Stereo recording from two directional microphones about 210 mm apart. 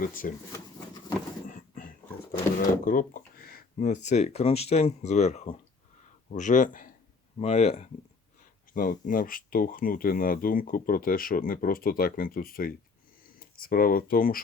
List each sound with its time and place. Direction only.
0.0 s speech: 40° left (ahead or behind)
1.5 s a sound: 40° left (ahead or behind)
2.6 s speech: 40° left (ahead or behind)
8.7 s speech: 40° left (ahead or behind)